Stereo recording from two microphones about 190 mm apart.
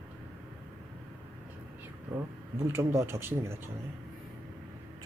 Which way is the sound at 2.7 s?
15° right (ahead or behind).